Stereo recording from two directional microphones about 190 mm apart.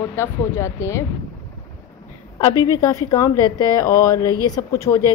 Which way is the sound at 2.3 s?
25° left (ahead or behind).